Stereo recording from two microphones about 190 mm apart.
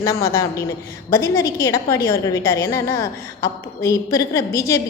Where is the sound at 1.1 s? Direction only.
15° left (ahead or behind).